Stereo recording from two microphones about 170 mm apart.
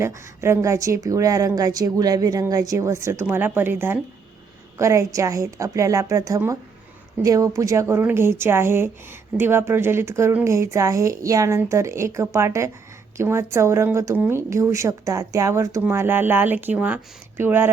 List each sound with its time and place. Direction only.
0.0 s a woman's voice: 15° right (ahead or behind)